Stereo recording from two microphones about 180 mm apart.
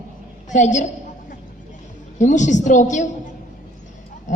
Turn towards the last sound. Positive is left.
turn(degrees=45)  # may be behind; listen again after turning